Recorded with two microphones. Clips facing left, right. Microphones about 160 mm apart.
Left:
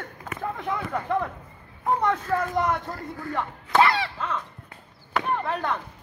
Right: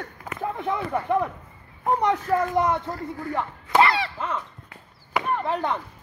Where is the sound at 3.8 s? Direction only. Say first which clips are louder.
Even; centre (ahead or behind).